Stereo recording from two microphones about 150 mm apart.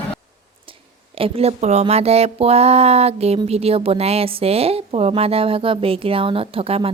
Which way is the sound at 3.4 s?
40° right (ahead or behind).